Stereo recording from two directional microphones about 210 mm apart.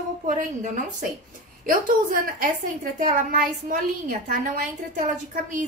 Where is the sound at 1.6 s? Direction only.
40° right (ahead or behind).